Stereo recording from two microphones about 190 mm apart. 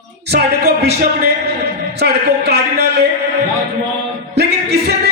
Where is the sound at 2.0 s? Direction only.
60° right (ahead or behind).